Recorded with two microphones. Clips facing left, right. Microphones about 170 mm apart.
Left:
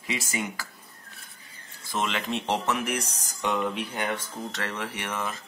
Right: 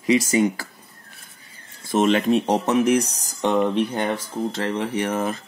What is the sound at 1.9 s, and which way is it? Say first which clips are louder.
Speech: right 11 dB; 40° right (ahead or behind).